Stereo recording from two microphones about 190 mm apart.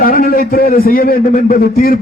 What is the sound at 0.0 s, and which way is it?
A man's voice, 50° left (ahead or behind).